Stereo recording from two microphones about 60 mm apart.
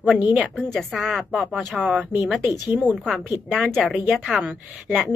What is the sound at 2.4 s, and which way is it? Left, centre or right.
Speech, right.